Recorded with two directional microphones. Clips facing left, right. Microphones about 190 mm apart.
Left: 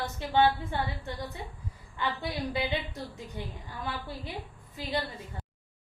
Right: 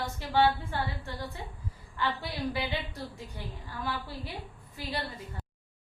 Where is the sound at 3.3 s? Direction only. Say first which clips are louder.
Left 1 dB; 20° left (ahead or behind).